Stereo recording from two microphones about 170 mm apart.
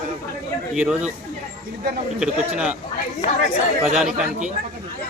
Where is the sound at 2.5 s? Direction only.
5° right (ahead or behind).